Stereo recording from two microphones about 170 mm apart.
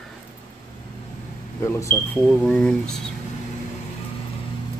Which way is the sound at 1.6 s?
15° left (ahead or behind).